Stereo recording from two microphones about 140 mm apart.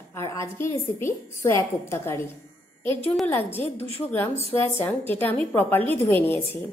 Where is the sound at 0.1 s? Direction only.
20° left (ahead or behind).